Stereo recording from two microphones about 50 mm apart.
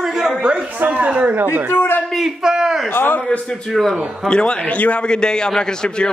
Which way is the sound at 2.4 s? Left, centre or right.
Centre.